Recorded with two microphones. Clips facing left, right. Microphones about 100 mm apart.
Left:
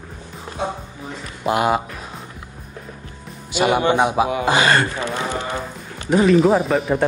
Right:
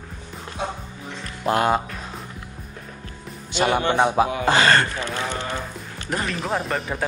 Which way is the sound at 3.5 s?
10° left (ahead or behind).